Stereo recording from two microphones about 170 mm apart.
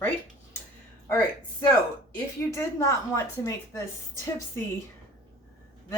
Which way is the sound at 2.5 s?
20° left (ahead or behind).